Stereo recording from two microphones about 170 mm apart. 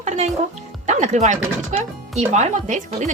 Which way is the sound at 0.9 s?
45° right (ahead or behind).